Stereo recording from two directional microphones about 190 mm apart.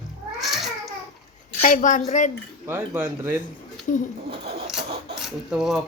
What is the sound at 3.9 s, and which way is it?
Speech, 40° left (ahead or behind).